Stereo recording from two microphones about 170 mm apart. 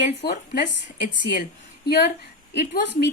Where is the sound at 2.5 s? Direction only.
75° left (ahead or behind).